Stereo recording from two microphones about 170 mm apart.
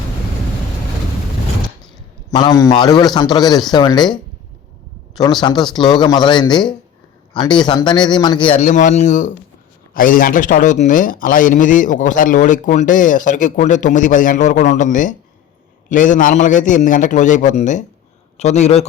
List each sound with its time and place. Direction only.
2.3 s a man's voice: 20° left (ahead or behind)
5.2 s a man's voice: 25° left (ahead or behind)
8.5 s a man's voice: 45° left (ahead or behind)